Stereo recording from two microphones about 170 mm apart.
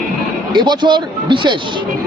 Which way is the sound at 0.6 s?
25° right (ahead or behind).